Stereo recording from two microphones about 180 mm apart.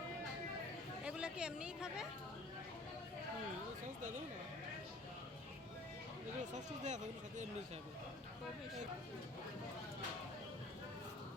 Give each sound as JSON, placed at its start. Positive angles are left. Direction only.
{"t": 1.0, "sound": "speech", "side_deg": -5}
{"t": 3.8, "sound": "speech", "side_deg": -45}
{"t": 6.4, "sound": "speech", "side_deg": -40}